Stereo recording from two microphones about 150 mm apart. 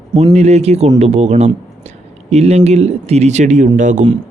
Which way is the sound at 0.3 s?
45° right (ahead or behind).